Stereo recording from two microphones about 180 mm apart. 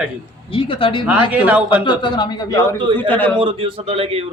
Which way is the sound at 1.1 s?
10° right (ahead or behind).